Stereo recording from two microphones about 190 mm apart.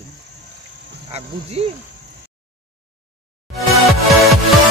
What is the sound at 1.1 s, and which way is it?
Speech, 35° right (ahead or behind).